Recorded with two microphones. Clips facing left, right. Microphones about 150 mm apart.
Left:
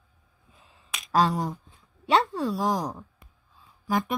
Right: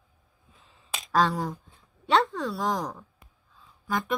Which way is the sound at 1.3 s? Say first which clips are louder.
Left 1 dB; 10° left (ahead or behind).